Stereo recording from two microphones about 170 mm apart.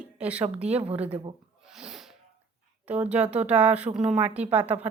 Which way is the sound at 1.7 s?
5° right (ahead or behind).